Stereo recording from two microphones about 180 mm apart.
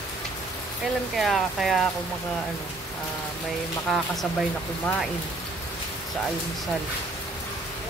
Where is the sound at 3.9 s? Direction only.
Centre (ahead or behind).